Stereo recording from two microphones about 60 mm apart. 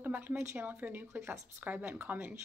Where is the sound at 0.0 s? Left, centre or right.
Right.